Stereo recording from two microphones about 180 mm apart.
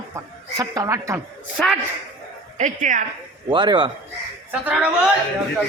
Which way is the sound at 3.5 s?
25° right (ahead or behind).